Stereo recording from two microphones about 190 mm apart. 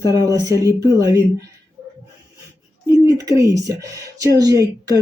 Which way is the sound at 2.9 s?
20° right (ahead or behind).